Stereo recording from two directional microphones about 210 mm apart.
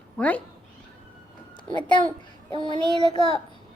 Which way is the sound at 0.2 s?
5° left (ahead or behind).